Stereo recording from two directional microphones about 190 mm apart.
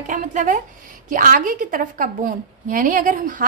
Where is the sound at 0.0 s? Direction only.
40° right (ahead or behind).